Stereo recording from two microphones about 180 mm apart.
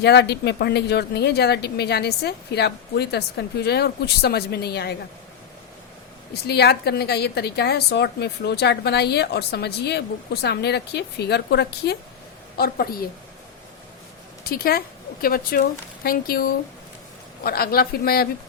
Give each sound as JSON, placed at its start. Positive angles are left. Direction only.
{"t": 0.0, "sound": "speech", "side_deg": 65}
{"t": 6.5, "sound": "a woman's voice", "side_deg": 65}
{"t": 12.5, "sound": "speech", "side_deg": 55}
{"t": 14.4, "sound": "a woman's voice", "side_deg": 55}